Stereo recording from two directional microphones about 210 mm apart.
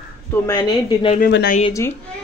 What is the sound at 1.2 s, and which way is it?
Speech, 50° left (ahead or behind).